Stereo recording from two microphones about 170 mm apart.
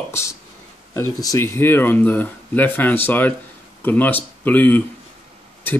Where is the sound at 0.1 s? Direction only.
15° left (ahead or behind).